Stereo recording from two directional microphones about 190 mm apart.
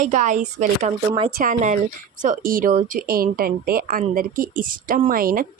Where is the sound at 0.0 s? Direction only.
40° right (ahead or behind).